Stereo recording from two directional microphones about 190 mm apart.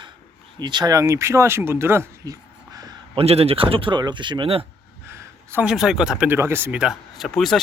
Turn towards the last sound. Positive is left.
turn(degrees=0)  # may be behind; listen again after turning